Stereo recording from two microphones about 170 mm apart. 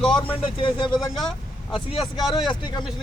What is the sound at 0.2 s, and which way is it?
Speech, 30° left (ahead or behind).